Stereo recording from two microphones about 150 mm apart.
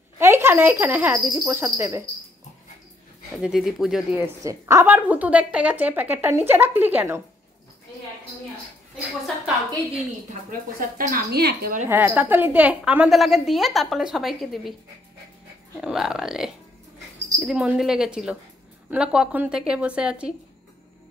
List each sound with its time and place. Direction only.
0.2 s a woman's voice: 15° right (ahead or behind)
3.3 s a woman's voice: 5° right (ahead or behind)
4.1 s a woman's voice: 20° right (ahead or behind)
10.8 s a woman's voice: 70° right (ahead or behind); by 11.8 s 90° right
11.9 s a woman's voice: 10° right (ahead or behind)
15.8 s a woman's voice: 5° right (ahead or behind)